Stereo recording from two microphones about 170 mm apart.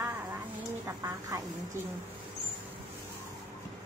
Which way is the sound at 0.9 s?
20° right (ahead or behind).